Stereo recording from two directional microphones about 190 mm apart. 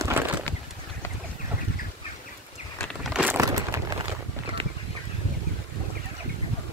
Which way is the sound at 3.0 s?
5° right (ahead or behind).